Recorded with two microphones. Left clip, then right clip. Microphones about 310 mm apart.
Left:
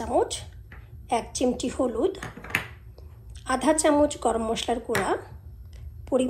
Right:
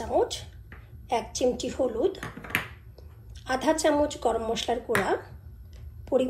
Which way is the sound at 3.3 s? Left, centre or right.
Left.